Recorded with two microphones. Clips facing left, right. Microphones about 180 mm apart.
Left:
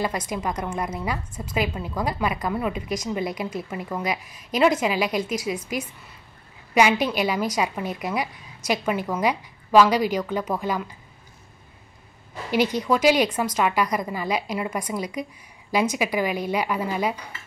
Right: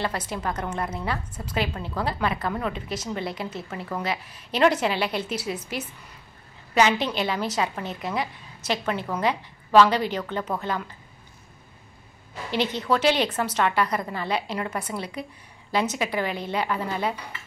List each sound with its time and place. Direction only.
0.3 s a woman's voice: 10° left (ahead or behind)
6.7 s a woman's voice: 10° left (ahead or behind)
12.8 s a woman's voice: 10° left (ahead or behind)